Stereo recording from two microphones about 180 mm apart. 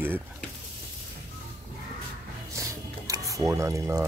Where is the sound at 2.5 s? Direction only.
15° right (ahead or behind).